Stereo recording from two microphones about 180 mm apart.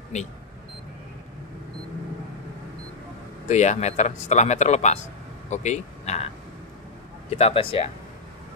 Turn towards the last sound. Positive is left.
turn(degrees=30)  # may be behind; listen again after turning